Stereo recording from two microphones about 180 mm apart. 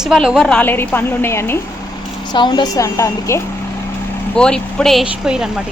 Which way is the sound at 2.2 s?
25° left (ahead or behind).